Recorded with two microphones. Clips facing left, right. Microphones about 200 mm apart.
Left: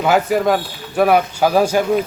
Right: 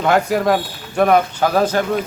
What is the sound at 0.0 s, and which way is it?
A man's voice, centre (ahead or behind).